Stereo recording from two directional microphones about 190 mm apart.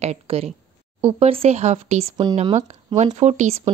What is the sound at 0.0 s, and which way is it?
Speech, 35° right (ahead or behind).